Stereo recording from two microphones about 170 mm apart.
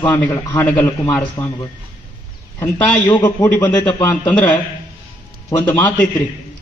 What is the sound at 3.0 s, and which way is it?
Speech, 25° left (ahead or behind).